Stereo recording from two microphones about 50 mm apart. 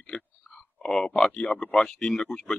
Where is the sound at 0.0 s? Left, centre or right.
Centre.